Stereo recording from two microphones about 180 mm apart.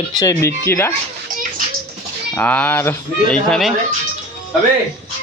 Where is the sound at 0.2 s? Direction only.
20° left (ahead or behind).